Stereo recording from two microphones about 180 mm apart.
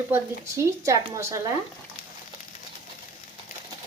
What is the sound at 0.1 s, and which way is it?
A woman's voice, 15° right (ahead or behind).